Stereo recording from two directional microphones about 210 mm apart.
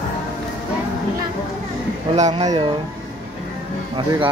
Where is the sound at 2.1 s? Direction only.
35° right (ahead or behind).